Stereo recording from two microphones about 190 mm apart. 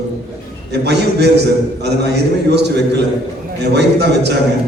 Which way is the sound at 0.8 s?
60° right (ahead or behind).